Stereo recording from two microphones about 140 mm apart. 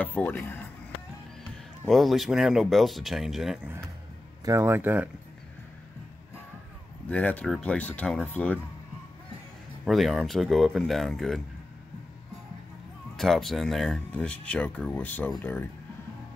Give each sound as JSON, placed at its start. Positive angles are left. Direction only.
{"t": 0.0, "sound": "speech", "side_deg": 10}
{"t": 1.9, "sound": "speech", "side_deg": 0}
{"t": 4.5, "sound": "speech", "side_deg": -20}
{"t": 7.1, "sound": "speech", "side_deg": 10}
{"t": 9.8, "sound": "speech", "side_deg": 0}
{"t": 13.1, "sound": "speech", "side_deg": 0}